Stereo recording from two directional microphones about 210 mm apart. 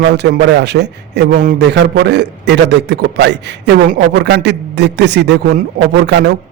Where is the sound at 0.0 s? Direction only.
50° right (ahead or behind).